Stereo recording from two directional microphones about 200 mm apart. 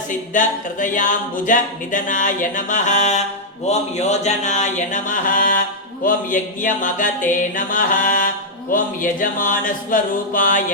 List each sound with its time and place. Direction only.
0.1 s speech: 40° left (ahead or behind)